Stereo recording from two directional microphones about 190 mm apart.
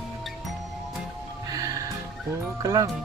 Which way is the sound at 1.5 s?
20° right (ahead or behind).